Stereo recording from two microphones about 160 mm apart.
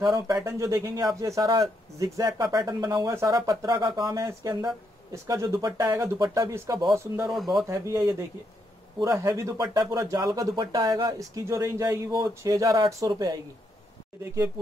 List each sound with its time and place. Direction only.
0.0 s speech: 20° right (ahead or behind)
7.2 s speech: centre (ahead or behind)
7.6 s speech: 20° right (ahead or behind)